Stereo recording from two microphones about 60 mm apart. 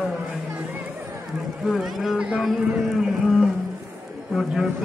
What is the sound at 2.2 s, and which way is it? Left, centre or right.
Speech, centre.